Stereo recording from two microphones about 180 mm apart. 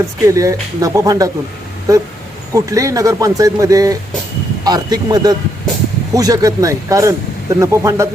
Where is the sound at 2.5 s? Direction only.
20° right (ahead or behind).